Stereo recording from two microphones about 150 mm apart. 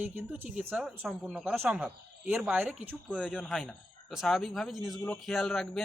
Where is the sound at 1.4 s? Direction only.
15° right (ahead or behind).